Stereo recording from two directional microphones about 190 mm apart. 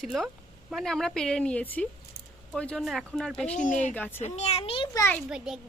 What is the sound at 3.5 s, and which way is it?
Speech, 40° left (ahead or behind).